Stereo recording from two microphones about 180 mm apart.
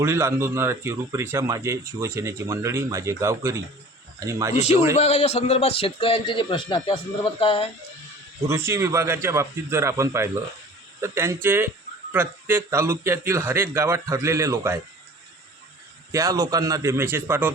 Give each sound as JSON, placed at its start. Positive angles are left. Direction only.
{"t": 0.0, "sound": "speech", "side_deg": -15}
{"t": 4.5, "sound": "a man's voice", "side_deg": 35}
{"t": 8.4, "sound": "speech", "side_deg": -15}
{"t": 16.1, "sound": "speech", "side_deg": -20}